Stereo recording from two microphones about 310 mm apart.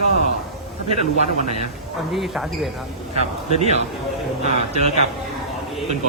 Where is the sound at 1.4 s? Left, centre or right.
Right.